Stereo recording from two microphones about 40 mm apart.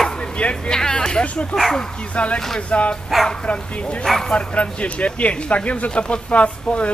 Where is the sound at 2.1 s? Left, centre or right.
Left.